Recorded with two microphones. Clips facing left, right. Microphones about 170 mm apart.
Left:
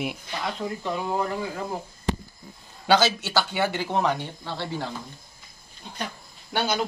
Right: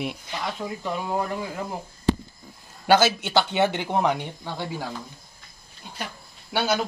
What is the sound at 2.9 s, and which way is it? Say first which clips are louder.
Speech: right 2 dB; 15° right (ahead or behind).